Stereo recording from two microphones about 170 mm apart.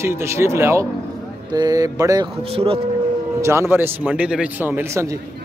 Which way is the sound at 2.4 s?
35° right (ahead or behind).